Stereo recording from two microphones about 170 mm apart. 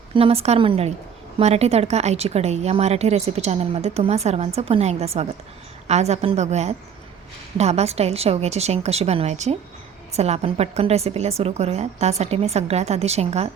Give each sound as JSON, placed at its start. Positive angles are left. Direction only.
{"t": 0.1, "sound": "speech", "side_deg": -35}